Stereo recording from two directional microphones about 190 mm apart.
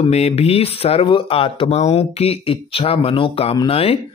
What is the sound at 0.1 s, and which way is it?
Speech, 35° left (ahead or behind).